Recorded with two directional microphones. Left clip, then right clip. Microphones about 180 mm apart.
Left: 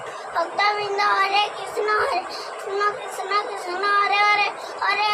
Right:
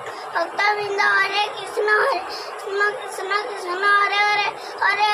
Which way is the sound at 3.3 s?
15° right (ahead or behind).